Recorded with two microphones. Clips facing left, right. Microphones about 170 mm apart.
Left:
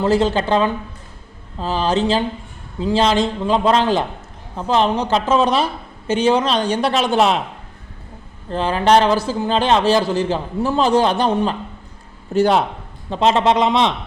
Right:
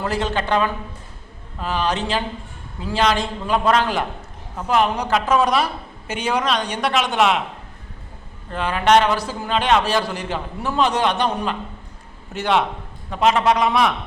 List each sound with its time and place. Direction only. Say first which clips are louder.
0.0 s a man's voice: left 7 dB; 30° left (ahead or behind)
8.4 s a man's voice: left 2 dB; 30° left (ahead or behind)